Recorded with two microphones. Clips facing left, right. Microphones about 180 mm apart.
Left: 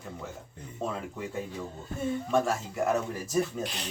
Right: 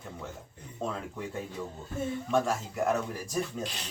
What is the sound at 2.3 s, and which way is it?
Speech, centre (ahead or behind).